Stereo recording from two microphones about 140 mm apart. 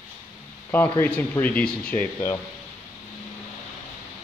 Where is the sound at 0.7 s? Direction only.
15° left (ahead or behind).